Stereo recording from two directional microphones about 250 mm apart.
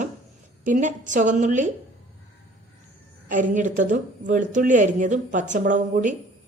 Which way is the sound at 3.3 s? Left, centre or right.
Right.